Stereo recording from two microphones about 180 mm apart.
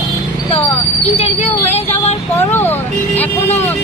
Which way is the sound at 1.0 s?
35° left (ahead or behind).